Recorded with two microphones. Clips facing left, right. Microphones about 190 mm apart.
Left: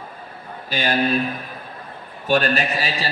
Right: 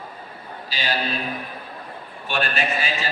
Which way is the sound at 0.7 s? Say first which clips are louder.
Left 5 dB; 50° left (ahead or behind).